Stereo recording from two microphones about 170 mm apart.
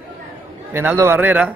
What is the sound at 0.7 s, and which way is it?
Speech, 15° right (ahead or behind).